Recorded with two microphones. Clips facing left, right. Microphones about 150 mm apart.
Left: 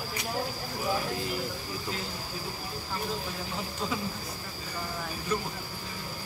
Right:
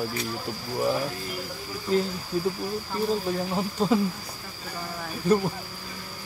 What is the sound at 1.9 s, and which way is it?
Speech, 40° right (ahead or behind).